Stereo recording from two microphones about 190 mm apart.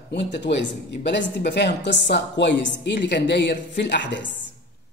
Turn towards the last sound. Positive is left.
turn(degrees=65)  # may be behind; listen again after turning